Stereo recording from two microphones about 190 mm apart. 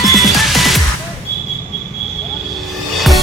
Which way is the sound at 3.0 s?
Centre (ahead or behind).